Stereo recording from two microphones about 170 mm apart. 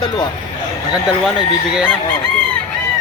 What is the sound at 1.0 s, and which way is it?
Speech, 5° right (ahead or behind).